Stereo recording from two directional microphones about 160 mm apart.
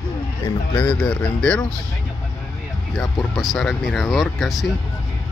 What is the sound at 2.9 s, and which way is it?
Speech, centre (ahead or behind).